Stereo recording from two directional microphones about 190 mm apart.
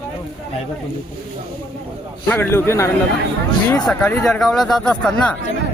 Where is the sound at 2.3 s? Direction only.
10° left (ahead or behind).